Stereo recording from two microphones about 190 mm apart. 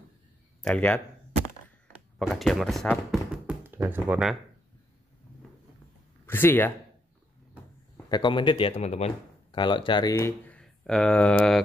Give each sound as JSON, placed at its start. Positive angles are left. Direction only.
{"t": 0.6, "sound": "speech", "side_deg": 5}
{"t": 2.1, "sound": "speech", "side_deg": 0}
{"t": 6.2, "sound": "speech", "side_deg": 10}
{"t": 8.1, "sound": "speech", "side_deg": 25}
{"t": 10.4, "sound": "speech", "side_deg": 5}